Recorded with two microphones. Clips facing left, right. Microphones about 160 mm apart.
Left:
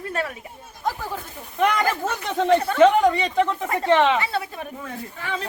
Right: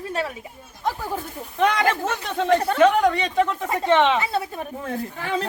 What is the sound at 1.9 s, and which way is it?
Speech, 15° left (ahead or behind).